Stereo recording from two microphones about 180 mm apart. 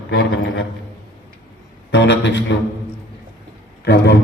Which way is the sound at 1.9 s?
75° left (ahead or behind).